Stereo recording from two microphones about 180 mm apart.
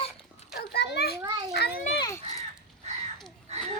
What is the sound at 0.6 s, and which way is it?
Children playing, 65° left (ahead or behind).